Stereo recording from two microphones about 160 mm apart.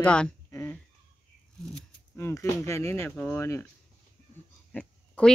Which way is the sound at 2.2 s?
15° left (ahead or behind).